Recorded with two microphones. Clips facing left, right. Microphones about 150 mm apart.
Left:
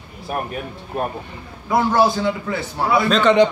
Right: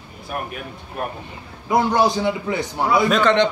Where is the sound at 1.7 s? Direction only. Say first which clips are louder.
Left 1 dB; 15° right (ahead or behind).